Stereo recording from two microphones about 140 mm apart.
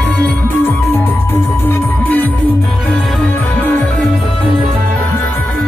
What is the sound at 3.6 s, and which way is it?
Music, 15° left (ahead or behind).